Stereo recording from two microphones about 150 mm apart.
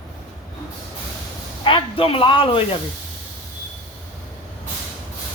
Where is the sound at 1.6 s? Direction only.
35° left (ahead or behind).